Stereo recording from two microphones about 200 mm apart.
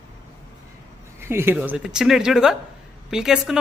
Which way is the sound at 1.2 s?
10° right (ahead or behind).